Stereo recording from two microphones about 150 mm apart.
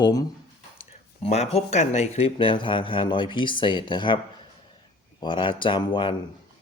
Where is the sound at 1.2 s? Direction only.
45° left (ahead or behind).